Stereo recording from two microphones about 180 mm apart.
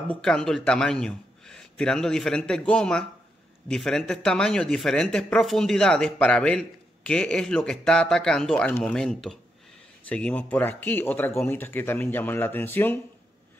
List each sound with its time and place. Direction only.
0.1 s a man's voice: 5° left (ahead or behind)